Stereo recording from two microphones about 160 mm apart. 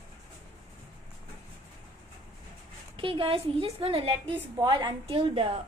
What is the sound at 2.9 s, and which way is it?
A woman's voice, 35° right (ahead or behind).